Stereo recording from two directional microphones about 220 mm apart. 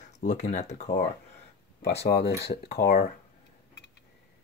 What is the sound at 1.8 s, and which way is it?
Speech, 50° left (ahead or behind).